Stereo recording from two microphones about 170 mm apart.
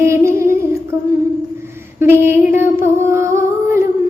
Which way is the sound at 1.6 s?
15° right (ahead or behind).